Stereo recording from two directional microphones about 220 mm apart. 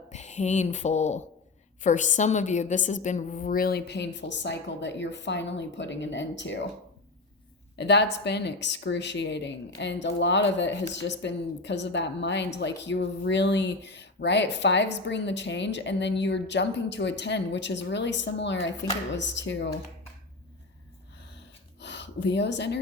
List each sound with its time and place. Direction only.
0.1 s speech: 30° left (ahead or behind); by 6.7 s 55° left (ahead or behind)
7.8 s speech: 50° left (ahead or behind)
21.8 s speech: 50° left (ahead or behind)